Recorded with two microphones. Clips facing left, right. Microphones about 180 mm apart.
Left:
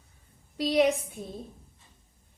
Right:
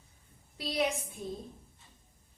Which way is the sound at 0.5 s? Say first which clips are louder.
Left 10 dB; 70° left (ahead or behind).